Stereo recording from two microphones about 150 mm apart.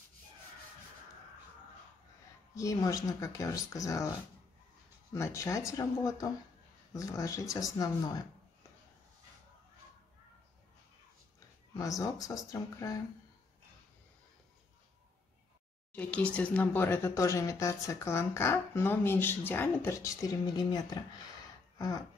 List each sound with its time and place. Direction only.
2.5 s speech: 20° left (ahead or behind)
5.1 s speech: 20° left (ahead or behind)
11.8 s speech: 25° left (ahead or behind)
15.9 s speech: 10° left (ahead or behind); by 21.0 s 30° left (ahead or behind)
21.7 s a sound: 25° left (ahead or behind)